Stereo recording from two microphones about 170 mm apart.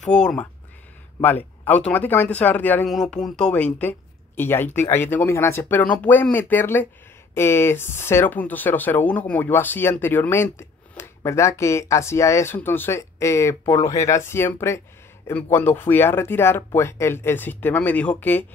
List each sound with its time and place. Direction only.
0.0 s speech: 5° left (ahead or behind)
13.7 s speech: 40° left (ahead or behind)
14.0 s speech: 15° left (ahead or behind)